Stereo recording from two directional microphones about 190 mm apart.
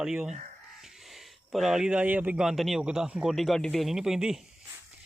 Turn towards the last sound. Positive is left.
turn(degrees=-5)  # may be behind; listen again after turning